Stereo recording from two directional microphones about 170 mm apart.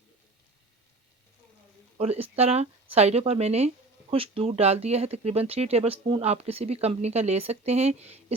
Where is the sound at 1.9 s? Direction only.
40° right (ahead or behind).